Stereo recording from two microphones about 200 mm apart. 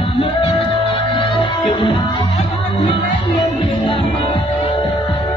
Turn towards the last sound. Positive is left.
turn(degrees=25)  # may be behind; listen again after turning